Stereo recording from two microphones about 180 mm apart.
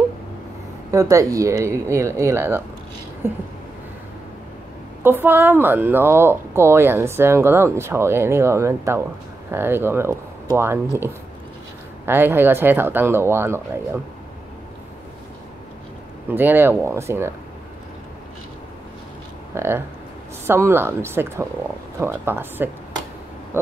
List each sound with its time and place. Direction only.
0.9 s a woman's voice: 20° right (ahead or behind)
5.0 s a woman's voice: 10° right (ahead or behind)
12.1 s a woman's voice: 10° right (ahead or behind)
16.3 s a woman's voice: 10° right (ahead or behind)
19.5 s a woman's voice: 15° right (ahead or behind)
23.5 s a sound: 10° right (ahead or behind)